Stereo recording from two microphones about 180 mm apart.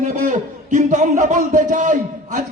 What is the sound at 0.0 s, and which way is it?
A man's voice, 45° right (ahead or behind).